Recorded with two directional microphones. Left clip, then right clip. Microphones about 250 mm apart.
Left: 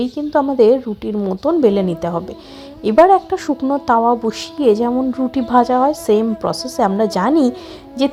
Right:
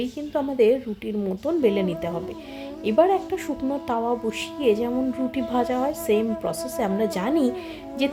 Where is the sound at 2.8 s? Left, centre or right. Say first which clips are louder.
Left 9 dB; centre.